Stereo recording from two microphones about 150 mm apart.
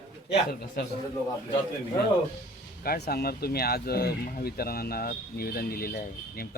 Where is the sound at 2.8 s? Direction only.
90° left.